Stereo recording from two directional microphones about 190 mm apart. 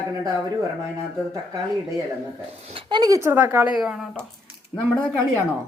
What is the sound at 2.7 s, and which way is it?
Speech, 20° right (ahead or behind).